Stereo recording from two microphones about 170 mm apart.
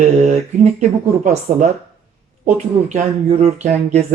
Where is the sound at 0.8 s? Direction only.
45° right (ahead or behind).